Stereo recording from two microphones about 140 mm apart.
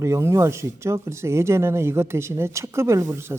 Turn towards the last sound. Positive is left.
turn(degrees=-20)  # may be behind; listen again after turning